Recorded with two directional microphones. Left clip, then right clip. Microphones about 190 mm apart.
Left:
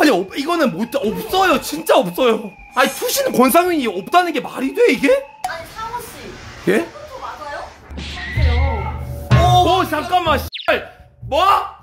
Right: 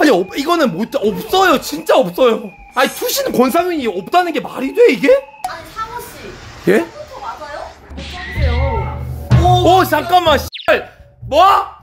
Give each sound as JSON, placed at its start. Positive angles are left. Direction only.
{"t": 0.0, "sound": "a sound", "side_deg": -10}
{"t": 0.4, "sound": "speech", "side_deg": -20}
{"t": 1.6, "sound": "speech", "side_deg": -5}
{"t": 5.4, "sound": "a sound", "side_deg": 5}
{"t": 6.6, "sound": "speech", "side_deg": -15}
{"t": 8.0, "sound": "music", "side_deg": 0}
{"t": 9.7, "sound": "speech", "side_deg": -30}